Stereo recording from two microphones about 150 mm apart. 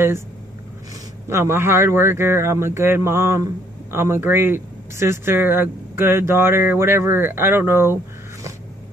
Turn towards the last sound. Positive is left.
turn(degrees=-15)  # may be behind; listen again after turning